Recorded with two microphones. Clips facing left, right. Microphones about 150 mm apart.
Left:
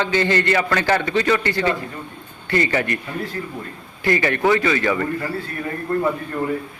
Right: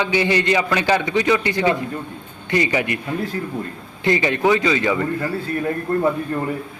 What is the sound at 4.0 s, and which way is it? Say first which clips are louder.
A man's voice: right 1 dB; 20° right (ahead or behind).